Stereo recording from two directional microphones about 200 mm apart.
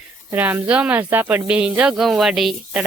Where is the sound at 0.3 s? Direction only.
10° right (ahead or behind).